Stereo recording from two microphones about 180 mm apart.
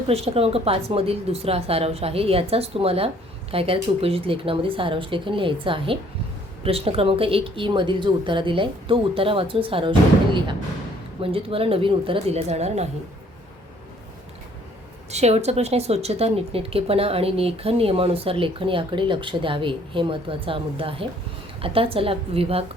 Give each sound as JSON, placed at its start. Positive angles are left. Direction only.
{"t": 0.1, "sound": "a woman's voice", "side_deg": -35}
{"t": 11.2, "sound": "speech", "side_deg": -30}
{"t": 15.1, "sound": "speech", "side_deg": -40}